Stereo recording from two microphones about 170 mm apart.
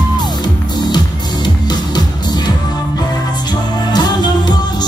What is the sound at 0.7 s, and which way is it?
Music, 25° left (ahead or behind).